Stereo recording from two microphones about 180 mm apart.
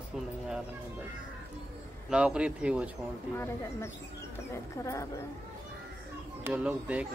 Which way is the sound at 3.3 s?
15° left (ahead or behind).